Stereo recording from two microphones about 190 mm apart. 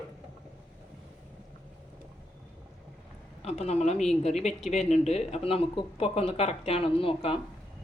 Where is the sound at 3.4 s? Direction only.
35° left (ahead or behind).